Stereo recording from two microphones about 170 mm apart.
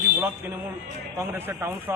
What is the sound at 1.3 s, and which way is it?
Speech, 15° right (ahead or behind).